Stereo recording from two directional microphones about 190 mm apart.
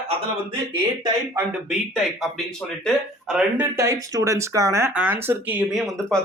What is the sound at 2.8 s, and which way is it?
Speech, 5° right (ahead or behind).